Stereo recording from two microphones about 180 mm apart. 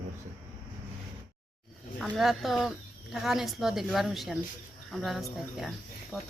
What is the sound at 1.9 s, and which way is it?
Speech, centre (ahead or behind).